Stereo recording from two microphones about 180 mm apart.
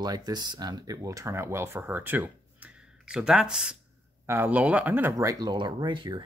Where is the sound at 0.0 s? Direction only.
20° right (ahead or behind).